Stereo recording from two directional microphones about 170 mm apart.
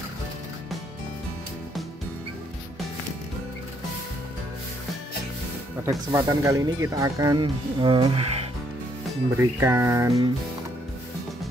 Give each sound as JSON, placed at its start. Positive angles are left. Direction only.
{"t": 5.9, "sound": "speech", "side_deg": -20}
{"t": 9.4, "sound": "music", "side_deg": -15}